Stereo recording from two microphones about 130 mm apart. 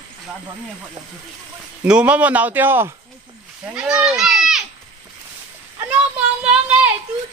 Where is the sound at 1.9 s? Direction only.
10° right (ahead or behind).